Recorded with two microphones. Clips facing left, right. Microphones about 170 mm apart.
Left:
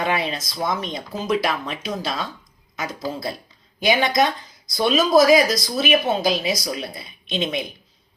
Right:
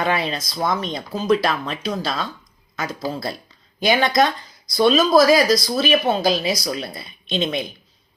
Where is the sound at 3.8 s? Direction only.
15° left (ahead or behind).